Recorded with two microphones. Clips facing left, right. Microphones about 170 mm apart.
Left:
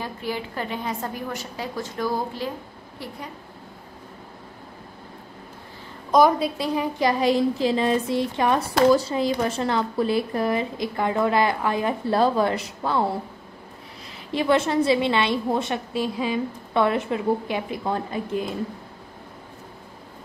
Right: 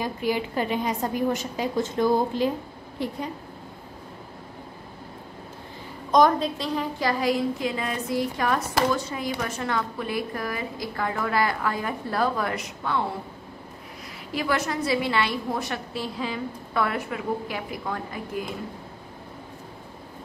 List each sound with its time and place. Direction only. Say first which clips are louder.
0.0 s a woman's voice: right 4 dB; 15° right (ahead or behind)
6.1 s speech: left 2 dB; 10° left (ahead or behind); by 13.0 s 30° left (ahead or behind)
14.3 s speech: left 6 dB; 25° left (ahead or behind)